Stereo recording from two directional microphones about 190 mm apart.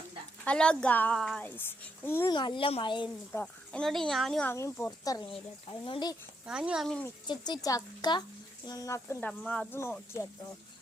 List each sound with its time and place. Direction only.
0.4 s a child's voice: 5° left (ahead or behind)
2.3 s speech: 25° left (ahead or behind)
3.3 s speech: 5° left (ahead or behind)
4.5 s a child's voice: 15° left (ahead or behind)
6.5 s speech: 5° right (ahead or behind)
7.3 s a child's voice: 20° left (ahead or behind)